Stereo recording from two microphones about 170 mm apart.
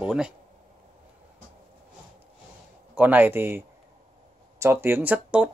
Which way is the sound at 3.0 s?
10° right (ahead or behind).